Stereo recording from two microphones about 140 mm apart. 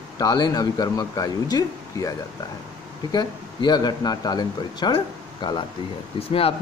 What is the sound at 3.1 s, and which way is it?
Speech, 30° left (ahead or behind).